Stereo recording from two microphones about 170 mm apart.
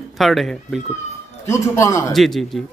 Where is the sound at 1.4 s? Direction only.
15° left (ahead or behind).